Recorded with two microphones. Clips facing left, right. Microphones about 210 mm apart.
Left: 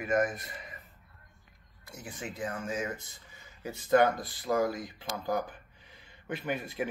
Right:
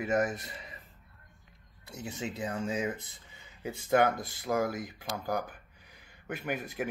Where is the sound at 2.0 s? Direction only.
25° right (ahead or behind).